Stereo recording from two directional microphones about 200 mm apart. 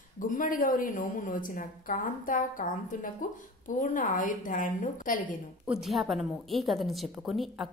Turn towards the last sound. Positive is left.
turn(degrees=0)  # may be behind; listen again after turning